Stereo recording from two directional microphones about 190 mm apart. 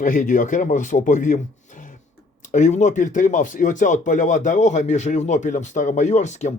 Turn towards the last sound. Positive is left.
turn(degrees=35)  # may be behind; listen again after turning